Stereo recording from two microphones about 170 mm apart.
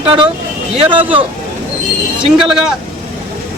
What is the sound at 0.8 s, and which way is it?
Speech, 10° right (ahead or behind).